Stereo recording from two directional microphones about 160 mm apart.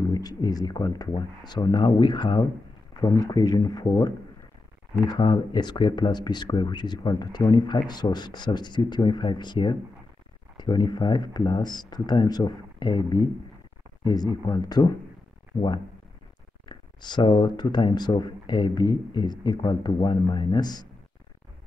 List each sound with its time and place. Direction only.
0.1 s speech: 25° left (ahead or behind)
16.6 s speech: 30° left (ahead or behind)